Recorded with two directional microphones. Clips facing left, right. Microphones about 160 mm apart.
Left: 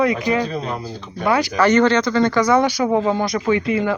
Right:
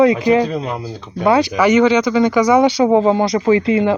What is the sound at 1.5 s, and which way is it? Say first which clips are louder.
Speech: right 3 dB; 10° right (ahead or behind).